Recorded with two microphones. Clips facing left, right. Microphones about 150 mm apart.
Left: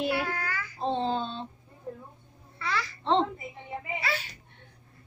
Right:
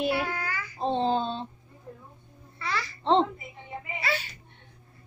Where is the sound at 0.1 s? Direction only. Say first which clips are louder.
Right 1 dB; 15° right (ahead or behind).